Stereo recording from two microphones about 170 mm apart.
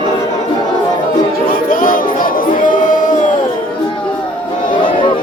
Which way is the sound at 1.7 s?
55° left (ahead or behind).